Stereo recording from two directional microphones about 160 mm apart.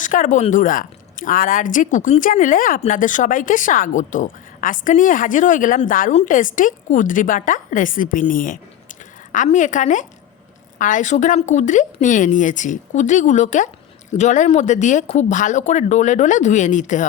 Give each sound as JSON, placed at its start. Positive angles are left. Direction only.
{"t": 0.0, "sound": "a woman's voice", "side_deg": 55}